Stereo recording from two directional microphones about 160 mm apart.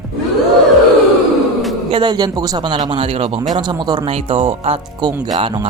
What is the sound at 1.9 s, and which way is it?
Speech, 25° right (ahead or behind).